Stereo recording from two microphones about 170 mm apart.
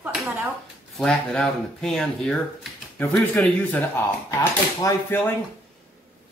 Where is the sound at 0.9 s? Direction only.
5° left (ahead or behind).